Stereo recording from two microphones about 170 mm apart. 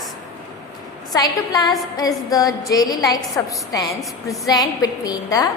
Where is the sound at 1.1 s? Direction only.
20° left (ahead or behind).